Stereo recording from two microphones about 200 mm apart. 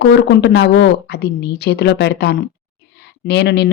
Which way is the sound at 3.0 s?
55° left (ahead or behind).